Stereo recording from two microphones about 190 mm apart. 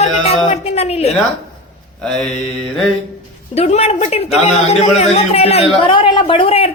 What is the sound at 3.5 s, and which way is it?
A woman's voice, 35° left (ahead or behind).